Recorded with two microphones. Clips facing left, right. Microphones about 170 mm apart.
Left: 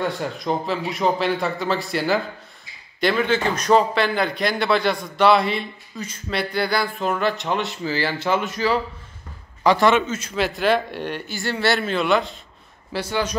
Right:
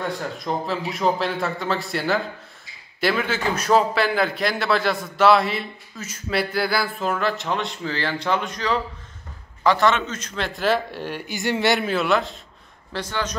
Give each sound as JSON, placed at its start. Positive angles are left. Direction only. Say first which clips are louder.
{"t": 0.0, "sound": "a man's voice", "louder": "left 3 dB", "side_deg": 0}
{"t": 11.2, "sound": "speech", "louder": "right 2 dB", "side_deg": -20}
{"t": 11.9, "sound": "a man's voice", "louder": "left 1 dB", "side_deg": 0}
{"t": 12.9, "sound": "a man's voice", "louder": "left 3 dB", "side_deg": 10}